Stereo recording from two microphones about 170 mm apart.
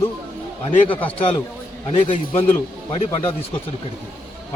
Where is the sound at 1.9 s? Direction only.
35° left (ahead or behind).